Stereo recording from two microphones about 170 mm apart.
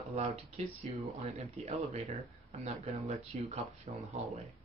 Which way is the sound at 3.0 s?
40° right (ahead or behind).